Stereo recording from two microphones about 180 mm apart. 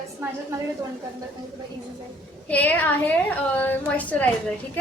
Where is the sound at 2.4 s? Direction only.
10° left (ahead or behind).